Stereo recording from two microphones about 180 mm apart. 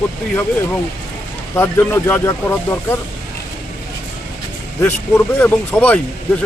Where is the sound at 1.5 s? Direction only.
15° left (ahead or behind).